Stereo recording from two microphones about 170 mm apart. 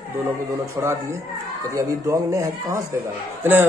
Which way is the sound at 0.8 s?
20° right (ahead or behind).